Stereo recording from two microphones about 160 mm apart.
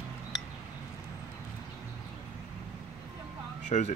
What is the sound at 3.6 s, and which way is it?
Speech, 50° left (ahead or behind).